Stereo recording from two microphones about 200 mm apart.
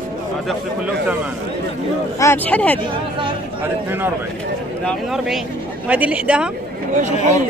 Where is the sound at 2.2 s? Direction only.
10° left (ahead or behind).